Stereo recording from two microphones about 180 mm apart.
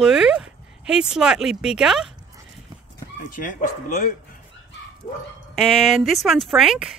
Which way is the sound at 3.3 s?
50° left (ahead or behind).